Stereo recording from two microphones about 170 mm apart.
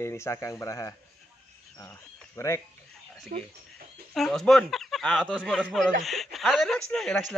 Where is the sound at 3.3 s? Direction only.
55° right (ahead or behind).